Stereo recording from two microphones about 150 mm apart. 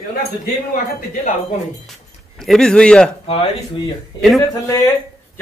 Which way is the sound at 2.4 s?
5° left (ahead or behind).